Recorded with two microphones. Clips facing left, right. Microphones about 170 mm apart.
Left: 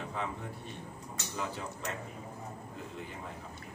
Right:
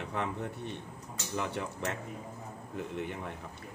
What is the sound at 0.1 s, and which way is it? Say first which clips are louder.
A man's voice: right 3 dB; 65° right (ahead or behind).